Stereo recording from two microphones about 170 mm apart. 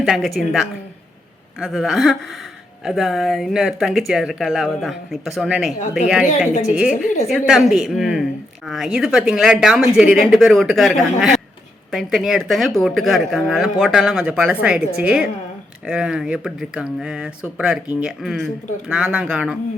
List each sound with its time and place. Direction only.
0.0 s speech: centre (ahead or behind)
6.5 s a woman's voice: 45° left (ahead or behind)
7.3 s speech: centre (ahead or behind)